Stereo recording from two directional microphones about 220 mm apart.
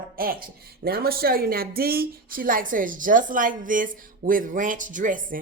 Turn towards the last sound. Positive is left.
turn(degrees=-35)  # may be behind; listen again after turning